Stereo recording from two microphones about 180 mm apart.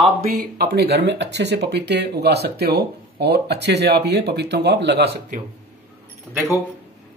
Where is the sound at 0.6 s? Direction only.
60° right (ahead or behind).